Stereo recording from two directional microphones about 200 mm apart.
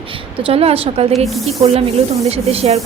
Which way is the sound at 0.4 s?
30° right (ahead or behind).